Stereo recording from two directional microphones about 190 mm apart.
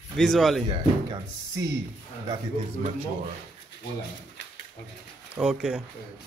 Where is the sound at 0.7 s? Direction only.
25° right (ahead or behind).